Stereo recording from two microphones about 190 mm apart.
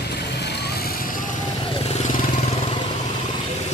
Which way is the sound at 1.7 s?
30° left (ahead or behind).